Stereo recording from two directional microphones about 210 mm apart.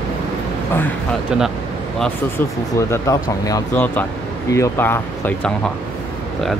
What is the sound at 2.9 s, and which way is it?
Speech, 15° left (ahead or behind).